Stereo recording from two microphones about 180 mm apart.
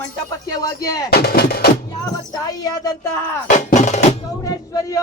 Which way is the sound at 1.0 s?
60° left (ahead or behind).